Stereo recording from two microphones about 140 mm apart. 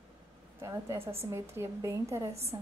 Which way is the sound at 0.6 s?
20° right (ahead or behind).